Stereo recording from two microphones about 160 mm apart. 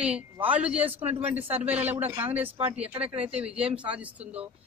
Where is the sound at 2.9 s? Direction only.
40° right (ahead or behind).